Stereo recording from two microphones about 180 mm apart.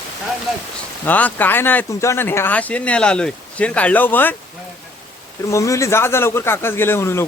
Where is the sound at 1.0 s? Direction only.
10° left (ahead or behind).